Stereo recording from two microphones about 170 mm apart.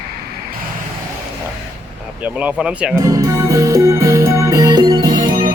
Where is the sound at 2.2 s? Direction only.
5° right (ahead or behind).